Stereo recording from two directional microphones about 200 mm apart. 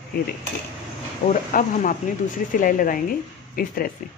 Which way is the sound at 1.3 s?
40° left (ahead or behind).